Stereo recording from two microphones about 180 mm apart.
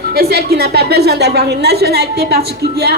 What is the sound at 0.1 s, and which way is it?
A man's voice, 60° right (ahead or behind).